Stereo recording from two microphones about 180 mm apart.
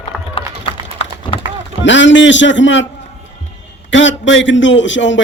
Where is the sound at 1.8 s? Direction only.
90° left.